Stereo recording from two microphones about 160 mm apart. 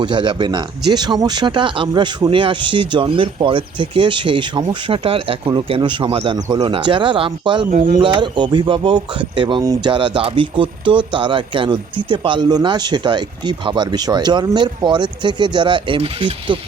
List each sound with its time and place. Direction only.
0.0 s speech: 30° right (ahead or behind)
7.7 s speech: 55° right (ahead or behind)
7.9 s speech: 30° right (ahead or behind)